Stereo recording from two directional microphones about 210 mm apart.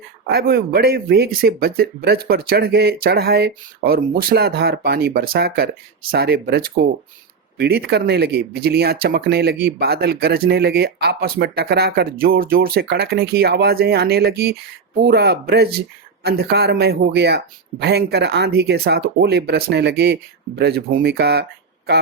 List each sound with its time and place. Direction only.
0.3 s speech: 45° right (ahead or behind)